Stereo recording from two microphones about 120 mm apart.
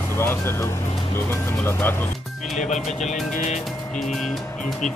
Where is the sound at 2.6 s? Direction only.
85° left.